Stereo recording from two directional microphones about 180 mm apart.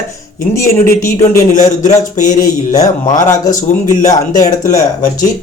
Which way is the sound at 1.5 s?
40° left (ahead or behind).